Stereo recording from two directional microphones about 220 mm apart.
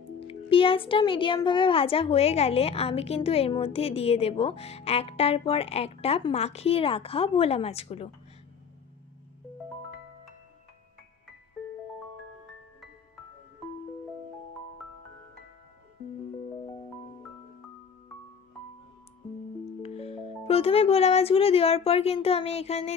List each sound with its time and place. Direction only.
0.3 s a child's voice: 25° left (ahead or behind)
19.8 s speech: 30° left (ahead or behind)